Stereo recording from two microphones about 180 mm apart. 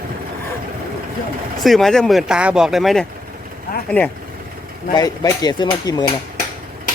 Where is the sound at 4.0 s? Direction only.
10° left (ahead or behind).